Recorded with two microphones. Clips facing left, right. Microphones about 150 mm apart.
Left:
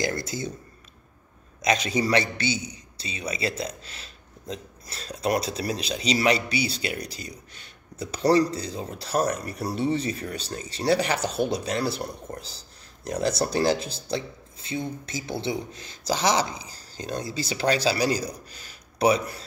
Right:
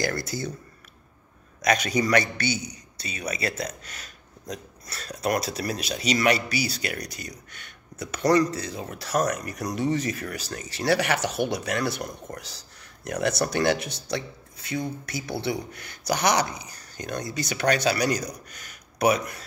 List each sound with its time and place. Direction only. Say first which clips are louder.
0.0 s a man's voice: even; 25° left (ahead or behind)
1.6 s a man's voice: right 1 dB; 25° left (ahead or behind)
15.9 s speech: even; 65° right (ahead or behind)
16.2 s a man's voice: even; 25° left (ahead or behind)